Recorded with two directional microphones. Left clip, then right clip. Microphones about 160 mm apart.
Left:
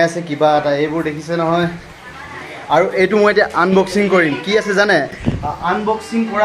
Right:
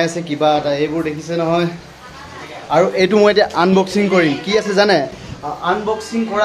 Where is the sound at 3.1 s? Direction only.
15° right (ahead or behind).